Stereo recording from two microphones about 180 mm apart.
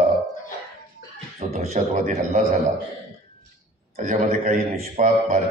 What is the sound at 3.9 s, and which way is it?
A man's voice, 40° right (ahead or behind).